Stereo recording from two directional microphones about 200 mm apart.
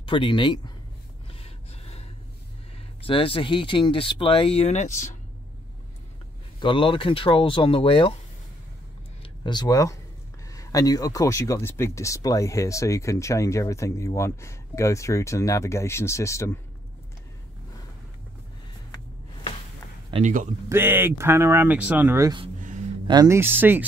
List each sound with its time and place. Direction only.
0.0 s speech: 25° left (ahead or behind)
1.3 s gasp: 30° left (ahead or behind)
3.1 s speech: 25° left (ahead or behind)
6.6 s speech: 25° left (ahead or behind)
9.2 s speech: 20° left (ahead or behind)
20.1 s speech: 35° right (ahead or behind)
20.6 s speech: 10° right (ahead or behind)